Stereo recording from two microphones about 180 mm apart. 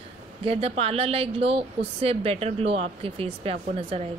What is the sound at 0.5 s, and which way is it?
A woman's voice, 35° right (ahead or behind).